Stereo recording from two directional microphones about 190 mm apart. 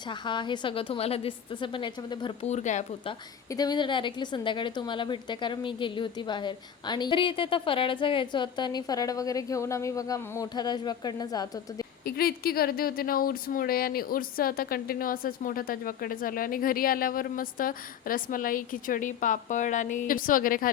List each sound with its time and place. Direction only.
0.1 s a woman's voice: 25° left (ahead or behind)
3.1 s a woman's voice: 20° left (ahead or behind)
12.0 s speech: 50° left (ahead or behind)